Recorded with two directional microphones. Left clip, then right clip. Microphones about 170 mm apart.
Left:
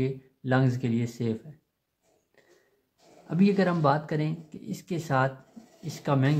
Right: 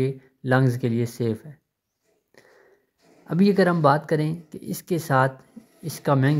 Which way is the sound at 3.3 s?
35° right (ahead or behind).